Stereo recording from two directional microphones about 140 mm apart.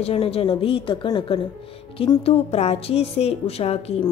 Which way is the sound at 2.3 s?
45° left (ahead or behind).